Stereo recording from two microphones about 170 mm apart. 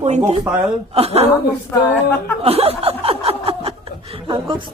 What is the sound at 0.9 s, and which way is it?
Speech, 35° right (ahead or behind).